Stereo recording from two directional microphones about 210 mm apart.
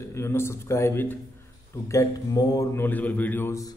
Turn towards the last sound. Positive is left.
turn(degrees=10)  # may be behind; listen again after turning